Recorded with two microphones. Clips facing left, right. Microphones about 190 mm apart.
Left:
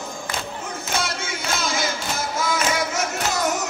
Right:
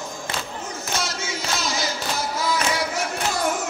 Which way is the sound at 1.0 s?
55° left (ahead or behind).